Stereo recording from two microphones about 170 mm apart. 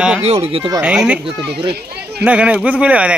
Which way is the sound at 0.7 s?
5° right (ahead or behind).